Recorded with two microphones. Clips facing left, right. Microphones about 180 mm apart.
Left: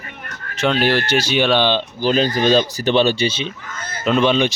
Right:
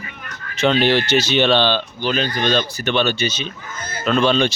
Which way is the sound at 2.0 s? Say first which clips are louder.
Left 6 dB; 35° left (ahead or behind).